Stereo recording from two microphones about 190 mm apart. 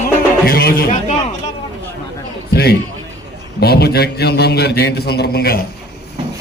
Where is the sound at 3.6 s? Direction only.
55° left (ahead or behind).